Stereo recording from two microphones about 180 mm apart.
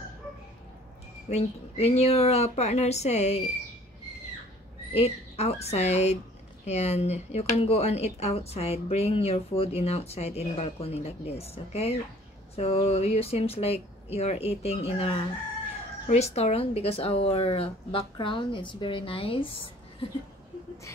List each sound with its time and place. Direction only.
1.3 s speech: 35° left (ahead or behind)
4.9 s speech: 35° left (ahead or behind)